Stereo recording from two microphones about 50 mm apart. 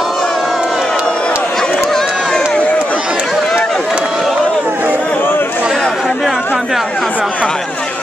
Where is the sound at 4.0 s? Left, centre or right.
Centre.